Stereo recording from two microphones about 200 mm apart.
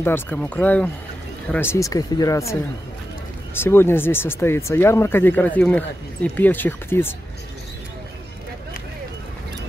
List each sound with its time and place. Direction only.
0.0 s speech: 10° left (ahead or behind)
3.5 s speech: 10° left (ahead or behind)